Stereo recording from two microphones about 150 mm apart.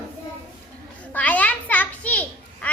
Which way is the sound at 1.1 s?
10° left (ahead or behind).